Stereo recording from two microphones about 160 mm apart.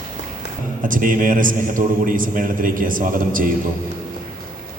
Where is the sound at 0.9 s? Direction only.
60° right (ahead or behind).